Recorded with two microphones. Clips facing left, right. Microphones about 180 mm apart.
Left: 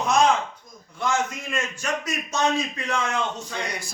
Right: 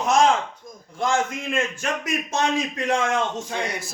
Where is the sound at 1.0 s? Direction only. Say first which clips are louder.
Right 2 dB; 55° right (ahead or behind).